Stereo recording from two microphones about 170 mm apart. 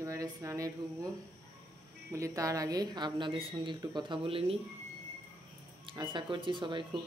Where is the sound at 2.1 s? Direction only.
20° right (ahead or behind).